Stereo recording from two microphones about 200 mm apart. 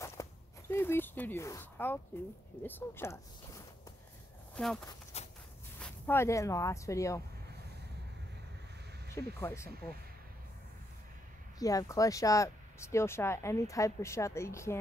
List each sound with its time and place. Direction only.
0.0 s a sound: 15° left (ahead or behind)
2.6 s speech: 10° left (ahead or behind)
4.6 s speech: 5° left (ahead or behind)
5.1 s walk: 30° left (ahead or behind)
5.8 s speech: 10° left (ahead or behind)
9.1 s speech: 15° left (ahead or behind)
11.6 s speech: 15° left (ahead or behind)